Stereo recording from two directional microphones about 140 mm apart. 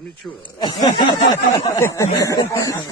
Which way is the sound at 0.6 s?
35° left (ahead or behind).